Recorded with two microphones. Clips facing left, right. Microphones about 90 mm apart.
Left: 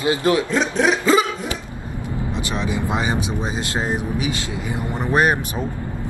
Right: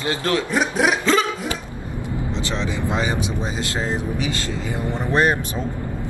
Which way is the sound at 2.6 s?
20° left (ahead or behind).